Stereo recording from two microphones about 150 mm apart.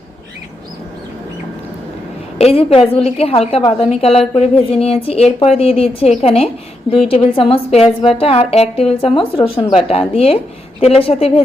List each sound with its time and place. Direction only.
2.4 s speech: 40° left (ahead or behind)